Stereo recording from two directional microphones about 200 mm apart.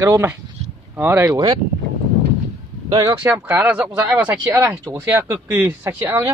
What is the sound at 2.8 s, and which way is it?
Speech, 20° right (ahead or behind).